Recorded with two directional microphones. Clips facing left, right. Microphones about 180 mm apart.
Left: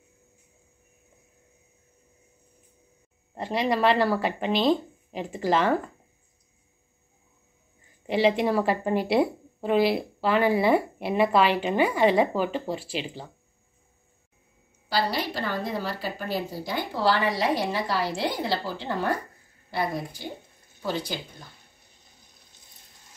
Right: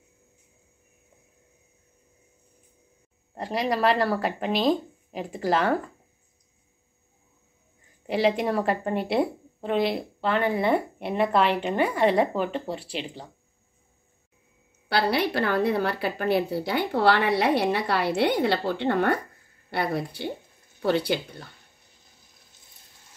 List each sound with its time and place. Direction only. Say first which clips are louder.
3.3 s a woman's voice: left 1 dB; centre (ahead or behind)
8.1 s a woman's voice: left 1 dB; centre (ahead or behind)
14.9 s a woman's voice: right 3 dB; 65° right (ahead or behind)